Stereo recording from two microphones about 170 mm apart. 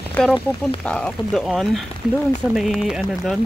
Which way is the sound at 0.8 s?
5° left (ahead or behind).